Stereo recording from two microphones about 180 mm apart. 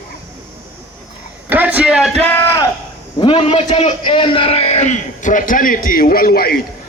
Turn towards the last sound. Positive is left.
turn(degrees=55)  # may be behind; listen again after turning